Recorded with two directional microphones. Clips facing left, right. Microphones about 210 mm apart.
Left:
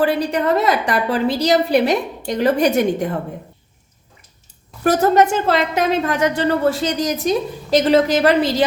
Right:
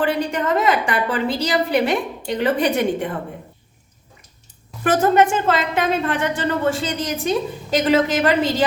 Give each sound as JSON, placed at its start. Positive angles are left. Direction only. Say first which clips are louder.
{"t": 0.0, "sound": "a woman's voice", "louder": "left 3 dB", "side_deg": 35}
{"t": 4.8, "sound": "a woman's voice", "louder": "left 2 dB", "side_deg": 40}